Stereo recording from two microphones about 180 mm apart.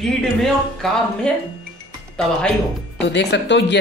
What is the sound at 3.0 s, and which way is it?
Speech, 75° left (ahead or behind).